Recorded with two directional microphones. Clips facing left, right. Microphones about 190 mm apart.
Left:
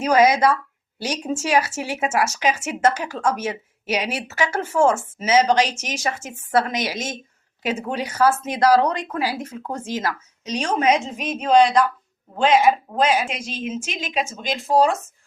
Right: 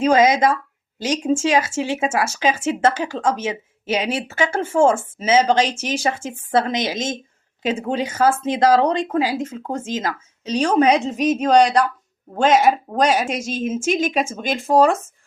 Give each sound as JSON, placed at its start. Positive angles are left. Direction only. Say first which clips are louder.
{"t": 0.0, "sound": "a woman's voice", "louder": "right 1 dB", "side_deg": -25}